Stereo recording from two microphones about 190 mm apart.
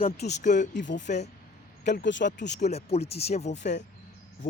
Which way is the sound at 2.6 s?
35° left (ahead or behind).